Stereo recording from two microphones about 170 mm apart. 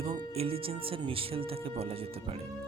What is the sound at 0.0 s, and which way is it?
Speech, 35° right (ahead or behind).